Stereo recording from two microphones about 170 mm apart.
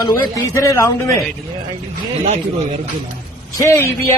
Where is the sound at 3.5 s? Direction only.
20° left (ahead or behind).